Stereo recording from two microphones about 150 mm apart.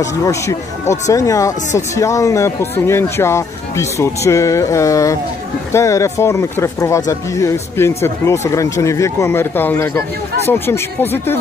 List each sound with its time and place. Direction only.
0.0 s speech: 20° left (ahead or behind)